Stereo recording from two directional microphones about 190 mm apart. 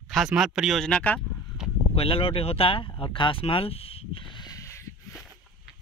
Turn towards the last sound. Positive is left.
turn(degrees=15)  # may be behind; listen again after turning